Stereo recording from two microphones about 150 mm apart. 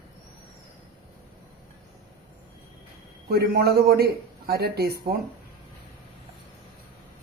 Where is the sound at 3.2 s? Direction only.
90° right.